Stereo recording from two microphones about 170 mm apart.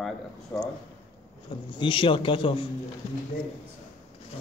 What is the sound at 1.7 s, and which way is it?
A man's voice, 30° left (ahead or behind).